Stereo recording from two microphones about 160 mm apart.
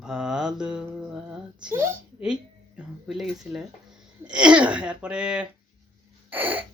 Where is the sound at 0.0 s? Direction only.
5° right (ahead or behind).